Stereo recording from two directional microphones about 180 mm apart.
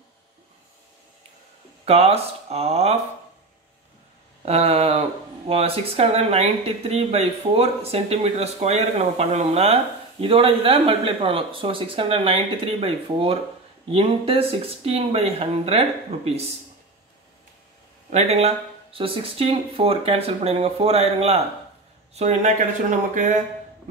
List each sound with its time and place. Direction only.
1.9 s speech: 35° right (ahead or behind)
4.5 s speech: 35° right (ahead or behind)
18.1 s speech: 35° right (ahead or behind)